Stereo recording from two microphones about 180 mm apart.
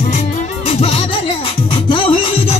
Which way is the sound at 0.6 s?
35° left (ahead or behind).